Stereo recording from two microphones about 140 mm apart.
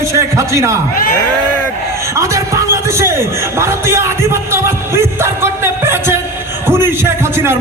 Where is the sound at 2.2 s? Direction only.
20° right (ahead or behind).